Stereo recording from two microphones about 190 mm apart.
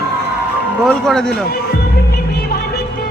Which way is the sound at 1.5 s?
55° left (ahead or behind).